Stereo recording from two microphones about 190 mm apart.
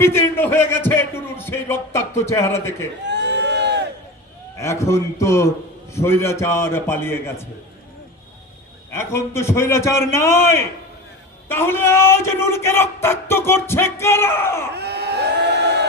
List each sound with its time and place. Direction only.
0.0 s speech: 10° left (ahead or behind)
3.1 s crowd: 65° right (ahead or behind)
4.5 s a man's voice: 15° left (ahead or behind)
8.9 s a man's voice: 15° left (ahead or behind)
14.7 s a sound: 60° right (ahead or behind)